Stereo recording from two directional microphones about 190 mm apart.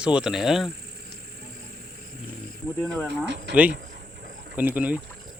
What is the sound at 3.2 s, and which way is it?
Speech, 65° right (ahead or behind).